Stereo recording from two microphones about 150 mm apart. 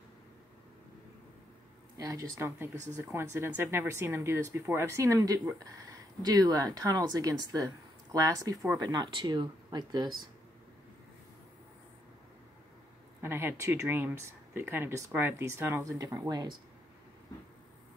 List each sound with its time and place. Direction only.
2.0 s speech: 20° right (ahead or behind)
13.2 s speech: 15° right (ahead or behind)